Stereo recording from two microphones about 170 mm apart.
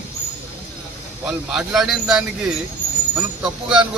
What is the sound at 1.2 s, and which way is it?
Speech, 5° right (ahead or behind).